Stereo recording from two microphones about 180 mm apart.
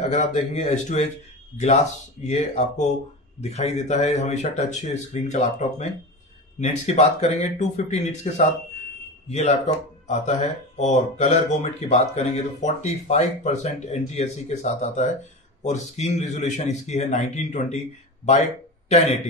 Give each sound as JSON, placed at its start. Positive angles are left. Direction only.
{"t": 0.0, "sound": "speech", "side_deg": 40}
{"t": 2.2, "sound": "speech", "side_deg": 40}